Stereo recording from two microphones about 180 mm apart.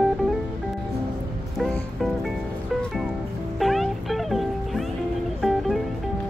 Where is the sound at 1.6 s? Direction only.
Centre (ahead or behind).